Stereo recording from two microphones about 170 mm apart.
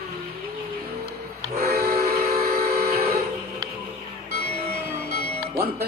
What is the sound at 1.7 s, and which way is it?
Train, 65° right (ahead or behind).